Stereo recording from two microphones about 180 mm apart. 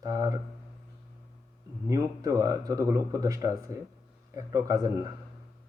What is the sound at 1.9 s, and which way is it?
Speech, 20° right (ahead or behind).